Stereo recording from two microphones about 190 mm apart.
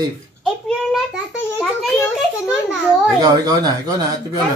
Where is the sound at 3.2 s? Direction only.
20° right (ahead or behind).